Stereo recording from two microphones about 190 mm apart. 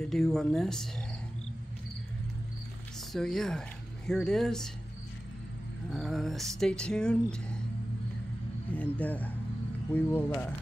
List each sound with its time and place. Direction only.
0.0 s speech: centre (ahead or behind)
3.1 s speech: centre (ahead or behind)
5.9 s speech: centre (ahead or behind)
8.7 s speech: 10° left (ahead or behind)